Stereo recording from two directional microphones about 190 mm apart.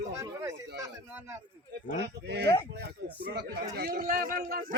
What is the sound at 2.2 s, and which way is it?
Speech, 60° right (ahead or behind).